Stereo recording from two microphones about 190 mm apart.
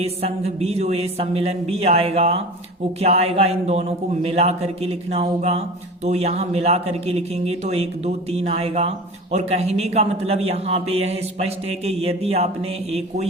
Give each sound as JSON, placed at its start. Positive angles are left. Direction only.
{"t": 0.0, "sound": "a man's voice", "side_deg": -35}